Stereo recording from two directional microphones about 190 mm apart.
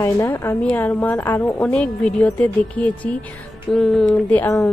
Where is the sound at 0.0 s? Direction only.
15° left (ahead or behind).